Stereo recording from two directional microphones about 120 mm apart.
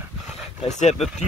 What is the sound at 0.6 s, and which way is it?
Speech, 70° left (ahead or behind).